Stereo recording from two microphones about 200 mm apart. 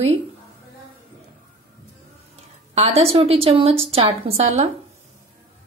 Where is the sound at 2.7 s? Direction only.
30° right (ahead or behind).